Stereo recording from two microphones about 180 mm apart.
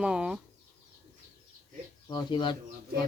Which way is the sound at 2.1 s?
25° left (ahead or behind).